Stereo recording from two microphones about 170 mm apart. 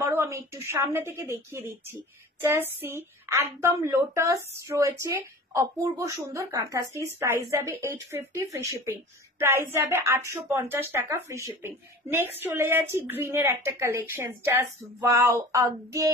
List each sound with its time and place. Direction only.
0.1 s speech: 15° right (ahead or behind)